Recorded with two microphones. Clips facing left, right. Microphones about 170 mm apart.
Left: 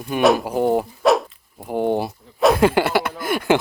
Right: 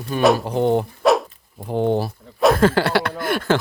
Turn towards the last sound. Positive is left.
turn(degrees=10)  # may be behind; listen again after turning